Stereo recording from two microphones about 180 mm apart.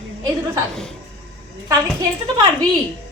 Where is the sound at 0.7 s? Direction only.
5° left (ahead or behind).